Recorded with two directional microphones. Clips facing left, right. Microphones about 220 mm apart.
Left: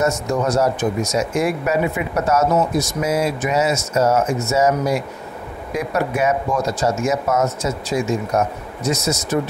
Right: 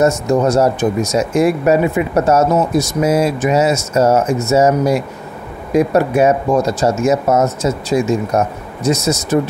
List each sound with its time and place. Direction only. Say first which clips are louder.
0.0 s speech: right 6 dB; 30° right (ahead or behind)